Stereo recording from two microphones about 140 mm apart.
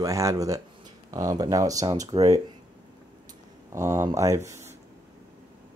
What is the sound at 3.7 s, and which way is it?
Speech, 20° right (ahead or behind).